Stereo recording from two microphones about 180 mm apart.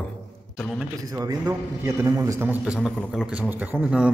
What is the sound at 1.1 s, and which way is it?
A man's voice, 20° right (ahead or behind).